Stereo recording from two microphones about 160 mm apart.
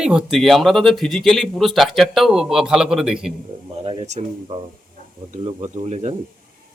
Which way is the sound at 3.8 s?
35° right (ahead or behind).